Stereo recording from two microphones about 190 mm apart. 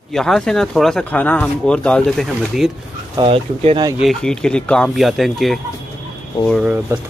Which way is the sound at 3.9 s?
Centre (ahead or behind).